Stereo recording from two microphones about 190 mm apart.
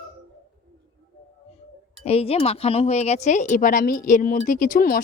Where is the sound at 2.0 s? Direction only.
30° left (ahead or behind).